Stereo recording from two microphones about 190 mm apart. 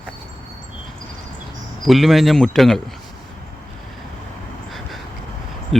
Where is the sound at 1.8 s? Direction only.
Centre (ahead or behind).